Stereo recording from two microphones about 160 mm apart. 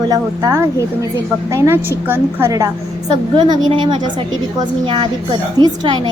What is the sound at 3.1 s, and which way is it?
A woman's voice, 25° right (ahead or behind).